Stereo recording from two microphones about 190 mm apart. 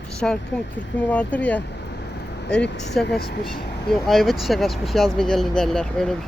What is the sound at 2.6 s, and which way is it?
Speech, 65° left (ahead or behind).